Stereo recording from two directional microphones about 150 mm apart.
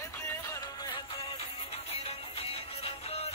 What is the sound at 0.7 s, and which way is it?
Music, 30° left (ahead or behind).